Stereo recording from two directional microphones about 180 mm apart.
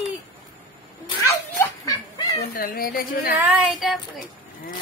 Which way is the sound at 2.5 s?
55° left (ahead or behind).